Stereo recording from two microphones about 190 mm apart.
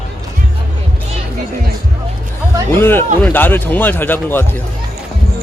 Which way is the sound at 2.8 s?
10° left (ahead or behind).